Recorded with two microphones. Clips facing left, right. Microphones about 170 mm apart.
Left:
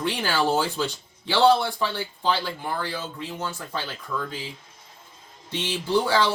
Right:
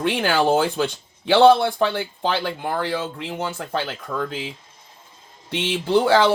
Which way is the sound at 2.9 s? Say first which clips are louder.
Right 6 dB; 70° right (ahead or behind).